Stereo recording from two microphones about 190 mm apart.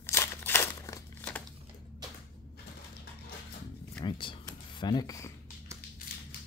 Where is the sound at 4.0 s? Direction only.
25° left (ahead or behind).